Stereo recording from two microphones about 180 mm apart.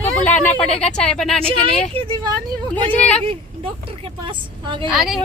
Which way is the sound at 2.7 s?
10° left (ahead or behind).